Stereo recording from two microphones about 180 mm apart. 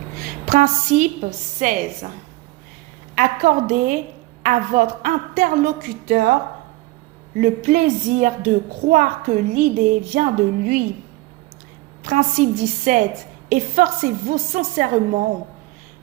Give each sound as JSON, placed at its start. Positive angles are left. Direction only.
{"t": 0.4, "sound": "speech", "side_deg": -40}
{"t": 3.2, "sound": "speech", "side_deg": -45}
{"t": 7.4, "sound": "speech", "side_deg": -40}
{"t": 12.0, "sound": "speech", "side_deg": -45}